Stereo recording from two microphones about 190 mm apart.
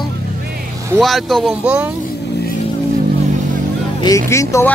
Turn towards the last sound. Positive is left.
turn(degrees=15)  # may be behind; listen again after turning